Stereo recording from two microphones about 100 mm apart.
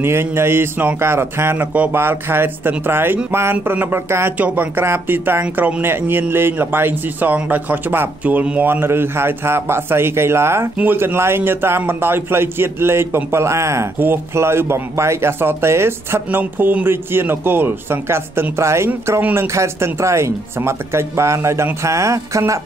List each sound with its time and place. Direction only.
0.0 s a man's voice: 25° right (ahead or behind)